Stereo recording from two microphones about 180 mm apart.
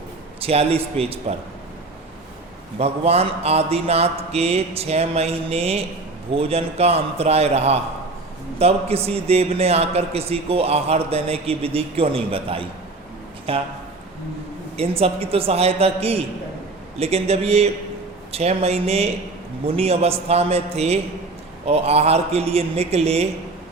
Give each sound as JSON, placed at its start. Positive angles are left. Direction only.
{"t": 0.4, "sound": "a man's voice", "side_deg": -35}
{"t": 2.7, "sound": "a man's voice", "side_deg": -35}
{"t": 14.8, "sound": "a man's voice", "side_deg": -35}